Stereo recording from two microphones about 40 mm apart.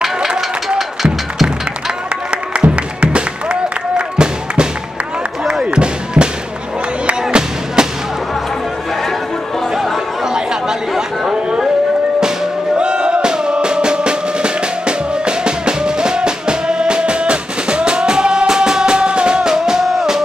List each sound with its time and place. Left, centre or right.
2.3 s music: right
5.7 s music: right
10.2 s chatter: centre
12.7 s music: right